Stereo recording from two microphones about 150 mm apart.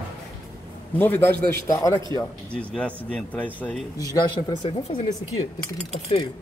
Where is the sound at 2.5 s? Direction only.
5° left (ahead or behind).